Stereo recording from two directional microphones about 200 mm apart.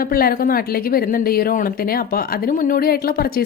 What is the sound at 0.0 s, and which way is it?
Speech, 45° left (ahead or behind).